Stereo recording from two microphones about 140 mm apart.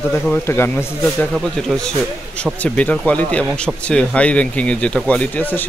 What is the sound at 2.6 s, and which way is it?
Speech, 10° left (ahead or behind).